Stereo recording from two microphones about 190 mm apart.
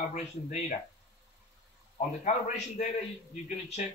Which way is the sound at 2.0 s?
40° left (ahead or behind).